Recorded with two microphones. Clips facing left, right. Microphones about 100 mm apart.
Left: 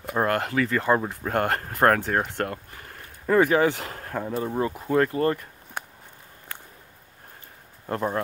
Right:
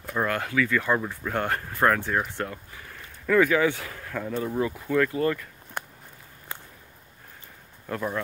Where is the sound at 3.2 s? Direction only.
35° left (ahead or behind).